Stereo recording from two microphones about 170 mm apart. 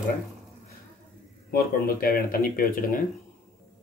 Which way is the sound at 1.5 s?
60° left (ahead or behind).